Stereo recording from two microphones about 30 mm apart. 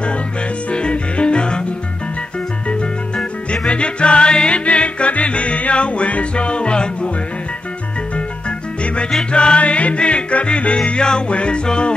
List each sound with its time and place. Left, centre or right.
0.7 s music: left
3.6 s music: left
4.6 s music: left
8.5 s music: left
9.6 s music: left